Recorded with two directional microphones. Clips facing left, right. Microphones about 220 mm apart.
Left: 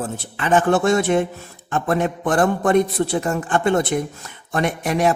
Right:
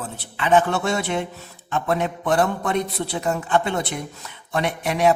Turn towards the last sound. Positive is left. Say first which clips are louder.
# left 1 dB
turn(degrees=45)  # may be behind; listen again after turning